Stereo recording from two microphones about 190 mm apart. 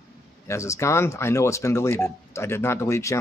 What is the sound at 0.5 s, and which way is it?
Speech, 15° left (ahead or behind).